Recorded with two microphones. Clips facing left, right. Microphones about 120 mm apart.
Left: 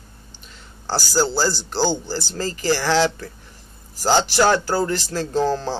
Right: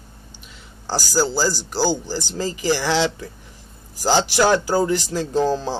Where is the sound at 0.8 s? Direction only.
10° right (ahead or behind).